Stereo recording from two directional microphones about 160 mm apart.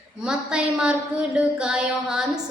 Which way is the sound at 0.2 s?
5° right (ahead or behind).